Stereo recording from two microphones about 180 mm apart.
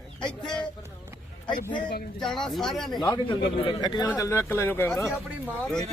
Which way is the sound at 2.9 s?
25° left (ahead or behind).